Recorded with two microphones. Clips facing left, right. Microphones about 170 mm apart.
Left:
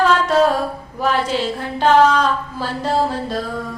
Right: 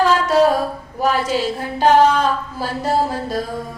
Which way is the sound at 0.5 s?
40° right (ahead or behind).